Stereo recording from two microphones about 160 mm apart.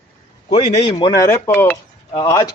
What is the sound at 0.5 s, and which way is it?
A man's voice, 30° left (ahead or behind).